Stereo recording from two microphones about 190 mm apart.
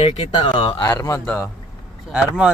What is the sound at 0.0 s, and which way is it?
Speech, 25° left (ahead or behind).